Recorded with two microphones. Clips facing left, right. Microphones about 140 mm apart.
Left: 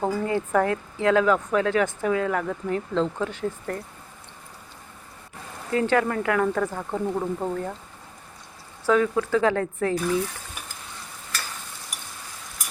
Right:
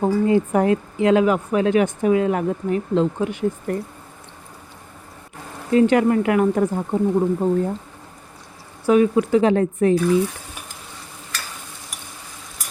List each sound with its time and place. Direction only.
0.0 s speech: 15° right (ahead or behind)
5.7 s speech: 20° right (ahead or behind)
8.9 s speech: 15° right (ahead or behind)